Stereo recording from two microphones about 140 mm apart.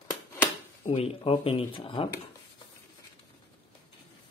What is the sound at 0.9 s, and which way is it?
Speech, 40° left (ahead or behind).